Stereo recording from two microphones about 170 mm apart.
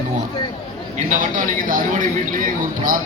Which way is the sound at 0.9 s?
50° right (ahead or behind).